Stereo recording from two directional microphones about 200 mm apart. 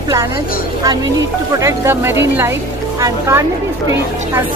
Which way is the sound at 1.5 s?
15° right (ahead or behind).